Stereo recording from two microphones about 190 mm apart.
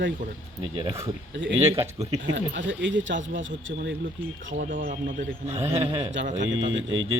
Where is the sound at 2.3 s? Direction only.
75° right (ahead or behind).